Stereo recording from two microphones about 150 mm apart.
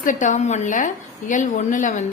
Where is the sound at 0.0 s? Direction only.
60° left (ahead or behind).